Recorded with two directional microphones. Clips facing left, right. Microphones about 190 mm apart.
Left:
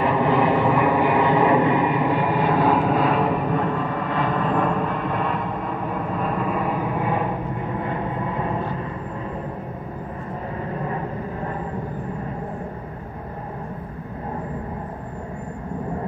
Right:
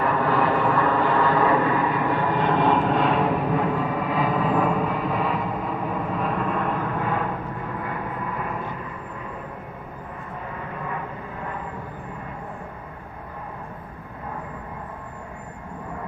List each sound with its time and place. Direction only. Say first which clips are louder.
0.0 s a sound: left 3 dB; 20° left (ahead or behind)
7.8 s vehicle: left 4 dB; 25° left (ahead or behind)
10.7 s vehicle: left 5 dB; 35° left (ahead or behind)